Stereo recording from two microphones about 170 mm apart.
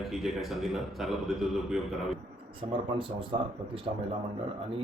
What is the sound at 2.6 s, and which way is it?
Speech, 30° right (ahead or behind).